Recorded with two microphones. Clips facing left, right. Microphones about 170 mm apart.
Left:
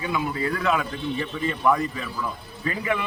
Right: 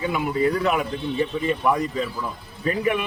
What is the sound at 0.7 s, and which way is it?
A man's voice, 20° right (ahead or behind).